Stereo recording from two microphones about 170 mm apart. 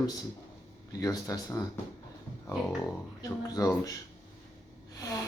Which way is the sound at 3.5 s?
20° left (ahead or behind).